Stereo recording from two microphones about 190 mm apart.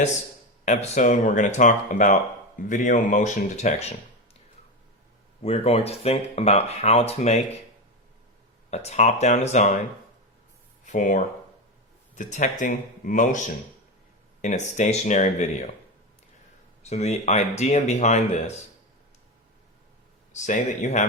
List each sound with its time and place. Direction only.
0.6 s speech: 40° left (ahead or behind)
5.4 s speech: 30° left (ahead or behind)
8.7 s speech: 35° left (ahead or behind)
10.8 s speech: 45° left (ahead or behind)
14.4 s speech: 40° left (ahead or behind)
16.8 s speech: 35° left (ahead or behind)
20.3 s speech: 40° left (ahead or behind)